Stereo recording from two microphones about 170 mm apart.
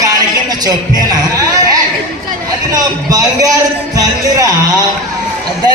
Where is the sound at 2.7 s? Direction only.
20° right (ahead or behind).